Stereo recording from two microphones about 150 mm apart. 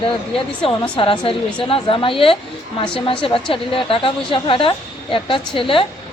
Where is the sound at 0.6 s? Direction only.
35° left (ahead or behind).